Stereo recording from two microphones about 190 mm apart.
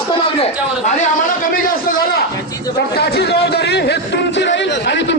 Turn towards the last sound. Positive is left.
turn(degrees=70)  # may be behind; listen again after turning